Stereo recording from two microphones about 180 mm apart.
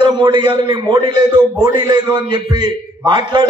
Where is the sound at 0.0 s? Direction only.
25° right (ahead or behind).